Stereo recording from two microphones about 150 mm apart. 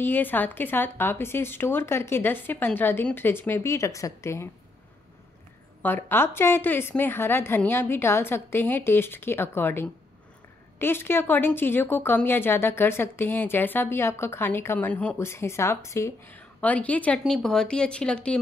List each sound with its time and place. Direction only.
0.0 s speech: 15° left (ahead or behind)
5.8 s speech: 15° left (ahead or behind)